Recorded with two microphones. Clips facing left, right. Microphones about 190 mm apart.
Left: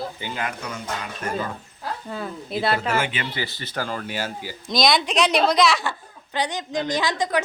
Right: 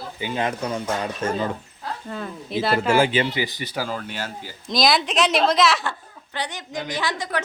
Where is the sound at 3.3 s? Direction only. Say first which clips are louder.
Right 4 dB; 15° right (ahead or behind).